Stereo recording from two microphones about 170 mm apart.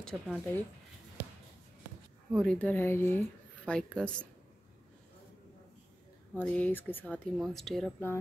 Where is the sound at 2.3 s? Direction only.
5° left (ahead or behind).